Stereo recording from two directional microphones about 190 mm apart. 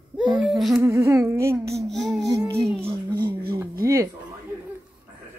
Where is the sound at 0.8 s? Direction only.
15° right (ahead or behind).